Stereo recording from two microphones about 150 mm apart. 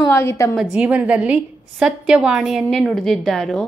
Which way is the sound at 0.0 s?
20° left (ahead or behind).